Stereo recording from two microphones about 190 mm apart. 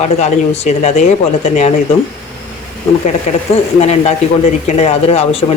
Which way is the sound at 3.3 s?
35° left (ahead or behind).